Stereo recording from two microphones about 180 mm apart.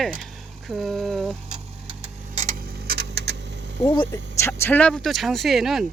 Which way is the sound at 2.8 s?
65° right (ahead or behind).